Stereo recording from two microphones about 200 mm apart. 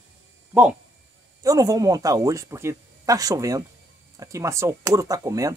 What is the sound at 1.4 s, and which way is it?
Speech, 15° right (ahead or behind).